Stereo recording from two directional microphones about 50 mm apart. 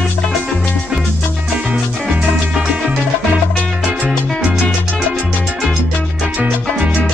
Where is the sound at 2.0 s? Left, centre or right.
Centre.